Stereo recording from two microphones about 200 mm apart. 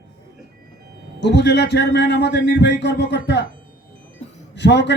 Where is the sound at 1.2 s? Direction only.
60° left (ahead or behind).